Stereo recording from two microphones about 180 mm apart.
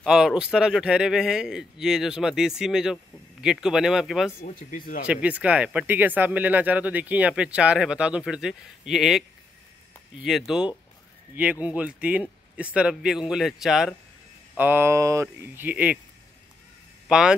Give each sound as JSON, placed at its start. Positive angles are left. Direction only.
{"t": 0.0, "sound": "a man's voice", "side_deg": -5}
{"t": 4.4, "sound": "speech", "side_deg": 45}
{"t": 5.0, "sound": "speech", "side_deg": -5}
{"t": 10.2, "sound": "a man's voice", "side_deg": 0}
{"t": 17.1, "sound": "a man's voice", "side_deg": -5}